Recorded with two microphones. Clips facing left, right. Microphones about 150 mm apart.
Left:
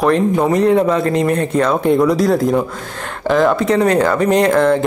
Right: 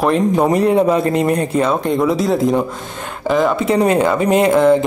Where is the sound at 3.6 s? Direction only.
20° right (ahead or behind).